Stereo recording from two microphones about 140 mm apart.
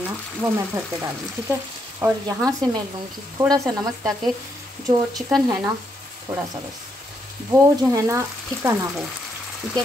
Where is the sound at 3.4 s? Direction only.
25° right (ahead or behind).